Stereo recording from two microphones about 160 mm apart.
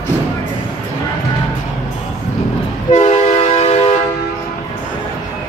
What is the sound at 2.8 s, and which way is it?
Vehicle, 45° left (ahead or behind).